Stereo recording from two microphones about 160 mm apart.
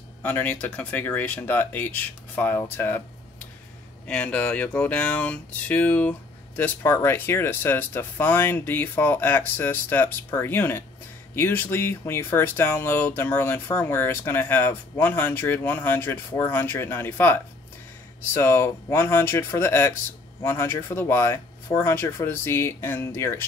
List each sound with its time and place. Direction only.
0.2 s speech: 10° left (ahead or behind)
4.1 s speech: 10° left (ahead or behind)